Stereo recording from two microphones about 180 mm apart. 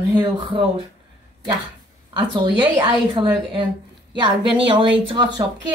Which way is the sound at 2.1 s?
25° right (ahead or behind).